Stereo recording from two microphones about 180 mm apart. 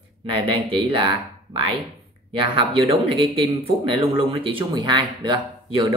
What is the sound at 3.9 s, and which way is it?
A man's voice, 30° right (ahead or behind).